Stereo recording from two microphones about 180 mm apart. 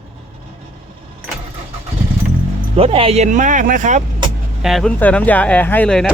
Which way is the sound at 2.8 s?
30° right (ahead or behind).